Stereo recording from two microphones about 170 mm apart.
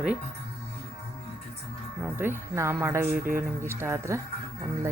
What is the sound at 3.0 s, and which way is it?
Speech, 60° right (ahead or behind).